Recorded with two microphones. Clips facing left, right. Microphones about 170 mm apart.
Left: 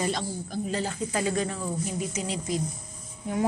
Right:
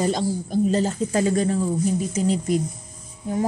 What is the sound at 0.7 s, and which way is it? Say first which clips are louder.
Speech: right 8 dB; 40° right (ahead or behind).